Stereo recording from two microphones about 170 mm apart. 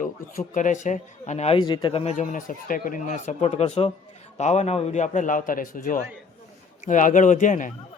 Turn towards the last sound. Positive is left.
turn(degrees=50)  # may be behind; listen again after turning